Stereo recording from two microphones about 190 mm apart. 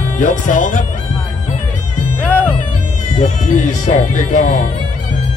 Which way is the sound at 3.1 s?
40° left (ahead or behind).